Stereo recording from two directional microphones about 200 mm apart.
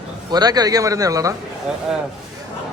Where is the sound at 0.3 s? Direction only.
20° right (ahead or behind).